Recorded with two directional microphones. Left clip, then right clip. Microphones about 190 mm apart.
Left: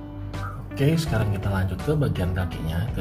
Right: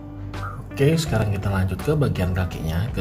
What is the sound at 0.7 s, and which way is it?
Speech, 10° right (ahead or behind).